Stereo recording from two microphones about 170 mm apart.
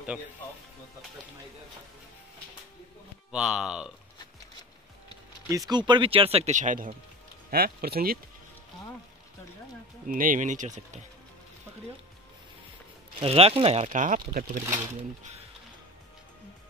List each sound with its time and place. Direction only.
3.3 s speech: 5° right (ahead or behind)
5.5 s speech: 20° right (ahead or behind); by 6.9 s 50° right (ahead or behind)
7.5 s speech: 65° right (ahead or behind)
10.0 s speech: 55° right (ahead or behind)
13.2 s speech: 35° right (ahead or behind); by 14.6 s 55° right (ahead or behind)